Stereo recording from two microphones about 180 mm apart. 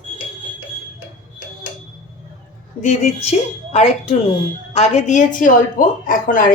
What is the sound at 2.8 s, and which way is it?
A woman's voice, 40° left (ahead or behind).